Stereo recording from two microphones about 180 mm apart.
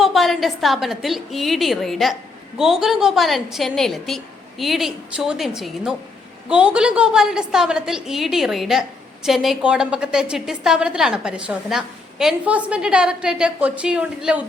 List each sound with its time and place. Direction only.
0.0 s a woman's voice: centre (ahead or behind)